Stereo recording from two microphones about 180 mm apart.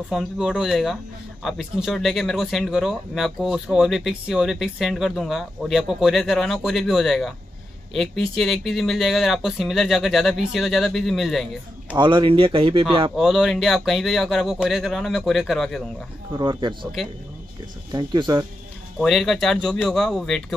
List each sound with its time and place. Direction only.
0.1 s speech: 5° right (ahead or behind)
12.0 s speech: 25° right (ahead or behind)
13.1 s speech: centre (ahead or behind)
16.3 s speech: 25° right (ahead or behind)
17.9 s speech: 25° right (ahead or behind)
18.9 s speech: centre (ahead or behind)